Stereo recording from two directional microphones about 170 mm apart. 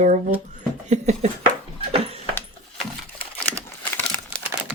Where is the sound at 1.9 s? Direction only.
35° right (ahead or behind).